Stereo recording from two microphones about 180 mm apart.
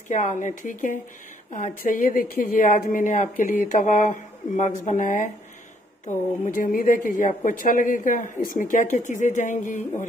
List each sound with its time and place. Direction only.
0.1 s a woman's voice: 45° left (ahead or behind)